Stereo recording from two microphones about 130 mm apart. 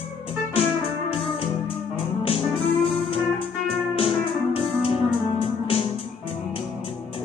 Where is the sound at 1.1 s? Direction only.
45° left (ahead or behind).